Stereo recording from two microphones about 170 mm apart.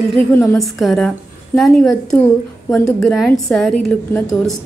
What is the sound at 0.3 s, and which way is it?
Speech, 15° left (ahead or behind).